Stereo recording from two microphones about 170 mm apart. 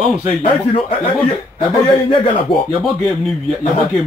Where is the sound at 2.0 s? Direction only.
30° left (ahead or behind).